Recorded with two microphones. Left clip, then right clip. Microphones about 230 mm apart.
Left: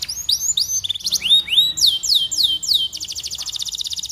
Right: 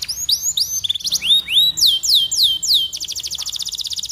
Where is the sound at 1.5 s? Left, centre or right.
Centre.